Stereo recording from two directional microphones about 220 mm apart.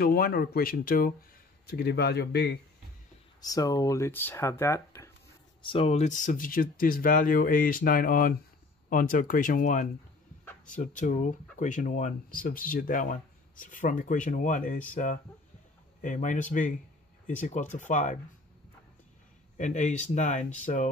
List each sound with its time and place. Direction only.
0.0 s speech: 45° left (ahead or behind)
3.3 s speech: 15° left (ahead or behind)
5.6 s speech: 25° left (ahead or behind)
16.0 s speech: 35° left (ahead or behind)
19.5 s speech: 35° left (ahead or behind)